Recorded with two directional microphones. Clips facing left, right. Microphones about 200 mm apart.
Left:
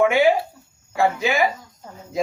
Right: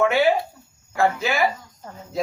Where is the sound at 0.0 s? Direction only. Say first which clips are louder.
Left 2 dB; 15° left (ahead or behind).